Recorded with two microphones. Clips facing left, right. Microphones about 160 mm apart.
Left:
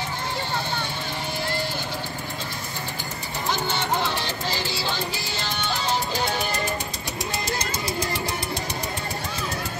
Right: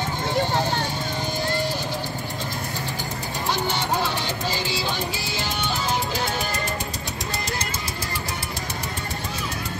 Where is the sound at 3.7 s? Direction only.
10° right (ahead or behind).